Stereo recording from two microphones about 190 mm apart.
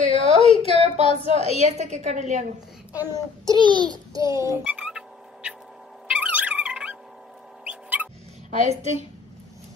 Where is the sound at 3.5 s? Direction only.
25° right (ahead or behind).